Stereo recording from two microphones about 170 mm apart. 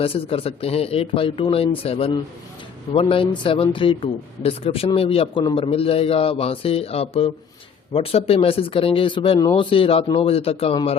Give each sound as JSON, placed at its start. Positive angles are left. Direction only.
{"t": 0.0, "sound": "a man's voice", "side_deg": 35}